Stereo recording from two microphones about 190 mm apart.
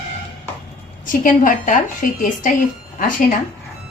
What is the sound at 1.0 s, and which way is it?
A woman's voice, 45° left (ahead or behind).